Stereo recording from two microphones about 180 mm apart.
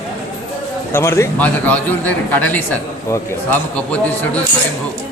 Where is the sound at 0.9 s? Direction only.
15° left (ahead or behind).